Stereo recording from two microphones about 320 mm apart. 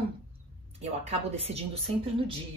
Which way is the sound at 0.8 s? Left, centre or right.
Centre.